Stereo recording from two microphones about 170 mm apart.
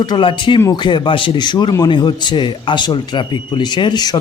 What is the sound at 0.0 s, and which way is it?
A man's voice, 30° left (ahead or behind).